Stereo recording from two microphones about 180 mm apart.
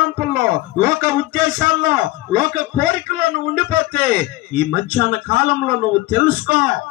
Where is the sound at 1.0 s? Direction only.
45° right (ahead or behind).